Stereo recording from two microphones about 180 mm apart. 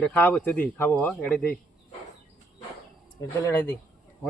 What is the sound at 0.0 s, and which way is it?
Speech, 10° left (ahead or behind).